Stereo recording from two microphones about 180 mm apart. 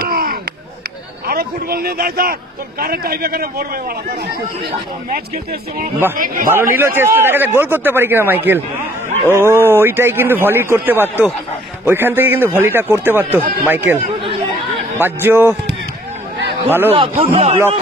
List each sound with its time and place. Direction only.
0.0 s chop: 55° right (ahead or behind)
1.2 s a man's voice: 60° right (ahead or behind)
5.1 s speech: 50° right (ahead or behind)
6.5 s a man's voice: 15° right (ahead or behind)
14.2 s chatter: 30° right (ahead or behind)
15.0 s a man's voice: 10° right (ahead or behind)
16.6 s a man's voice: 10° right (ahead or behind)
16.9 s speech: 30° right (ahead or behind)